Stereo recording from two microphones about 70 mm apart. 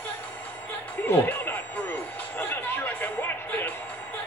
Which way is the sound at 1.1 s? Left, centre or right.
Left.